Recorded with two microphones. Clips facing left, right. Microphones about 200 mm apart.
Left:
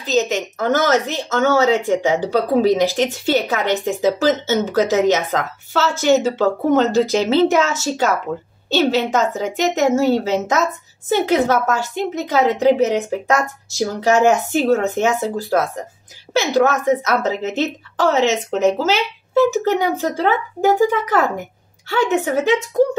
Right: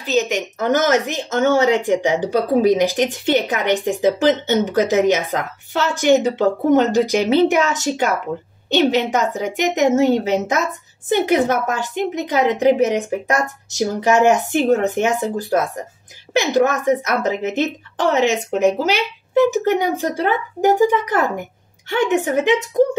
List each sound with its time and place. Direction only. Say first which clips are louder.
0.0 s speech: left 1 dB; 10° right (ahead or behind)
21.8 s a woman's voice: even; 20° right (ahead or behind)